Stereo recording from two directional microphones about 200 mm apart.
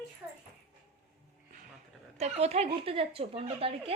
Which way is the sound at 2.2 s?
35° right (ahead or behind).